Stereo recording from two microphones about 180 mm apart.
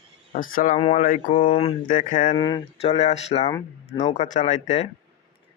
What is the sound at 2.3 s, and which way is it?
Speech, 25° left (ahead or behind).